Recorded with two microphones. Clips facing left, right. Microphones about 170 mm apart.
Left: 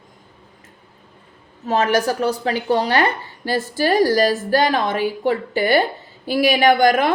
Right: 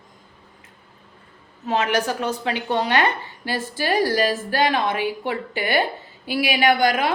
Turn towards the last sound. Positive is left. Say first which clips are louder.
# left 4 dB
turn(degrees=45)  # may be behind; listen again after turning